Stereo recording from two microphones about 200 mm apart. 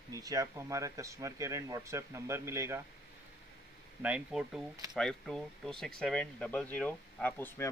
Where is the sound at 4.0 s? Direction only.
5° right (ahead or behind).